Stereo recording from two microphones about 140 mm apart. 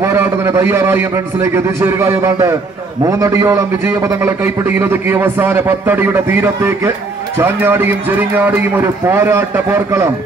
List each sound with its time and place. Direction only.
0.0 s a man's voice: 20° right (ahead or behind)